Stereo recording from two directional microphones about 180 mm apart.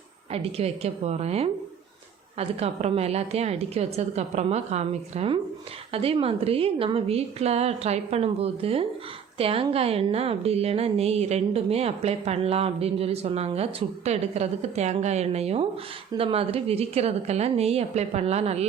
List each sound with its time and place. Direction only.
0.3 s a woman's voice: 35° right (ahead or behind)